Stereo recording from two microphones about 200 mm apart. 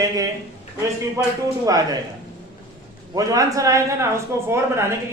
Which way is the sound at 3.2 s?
15° right (ahead or behind).